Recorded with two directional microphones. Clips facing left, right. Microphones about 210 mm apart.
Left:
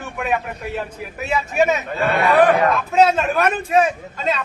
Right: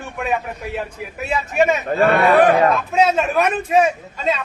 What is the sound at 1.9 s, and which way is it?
Speech, 55° right (ahead or behind).